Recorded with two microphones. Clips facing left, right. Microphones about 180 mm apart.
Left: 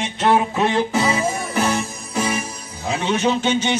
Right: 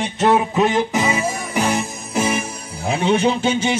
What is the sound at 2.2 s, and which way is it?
Music, 30° right (ahead or behind).